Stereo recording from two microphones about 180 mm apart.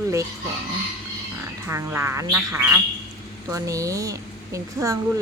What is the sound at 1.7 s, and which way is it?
A woman's voice, 15° right (ahead or behind).